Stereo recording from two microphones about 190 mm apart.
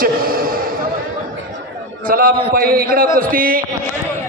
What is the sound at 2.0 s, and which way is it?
Speech, 50° right (ahead or behind).